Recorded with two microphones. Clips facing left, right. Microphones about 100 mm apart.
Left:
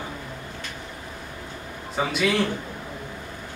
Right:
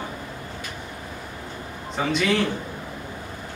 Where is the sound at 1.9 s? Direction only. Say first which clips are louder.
Even; 5° left (ahead or behind).